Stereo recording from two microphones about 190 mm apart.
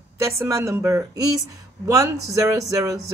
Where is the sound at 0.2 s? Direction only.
15° right (ahead or behind).